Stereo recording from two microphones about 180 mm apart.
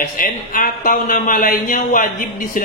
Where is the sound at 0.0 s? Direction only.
50° left (ahead or behind).